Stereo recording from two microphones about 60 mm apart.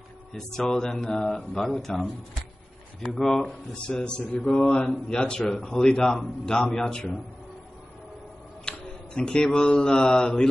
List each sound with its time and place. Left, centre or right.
0.3 s speech: centre
3.2 s speech: centre
3.4 s speech: centre
8.6 s mantra: centre